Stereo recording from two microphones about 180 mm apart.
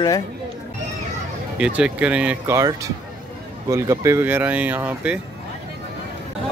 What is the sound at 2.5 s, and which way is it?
Speech, 20° right (ahead or behind).